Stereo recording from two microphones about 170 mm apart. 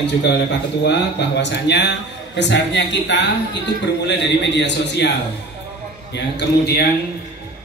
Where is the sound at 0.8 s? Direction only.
90° left.